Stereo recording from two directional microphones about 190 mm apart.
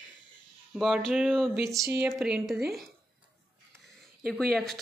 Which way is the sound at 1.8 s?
15° right (ahead or behind).